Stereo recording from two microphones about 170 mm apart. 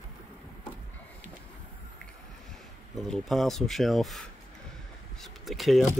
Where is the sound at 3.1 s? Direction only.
Centre (ahead or behind).